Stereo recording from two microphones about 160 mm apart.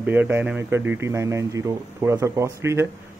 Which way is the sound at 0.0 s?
10° right (ahead or behind).